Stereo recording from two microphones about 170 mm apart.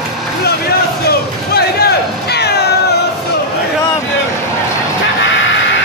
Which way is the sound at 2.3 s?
75° left (ahead or behind).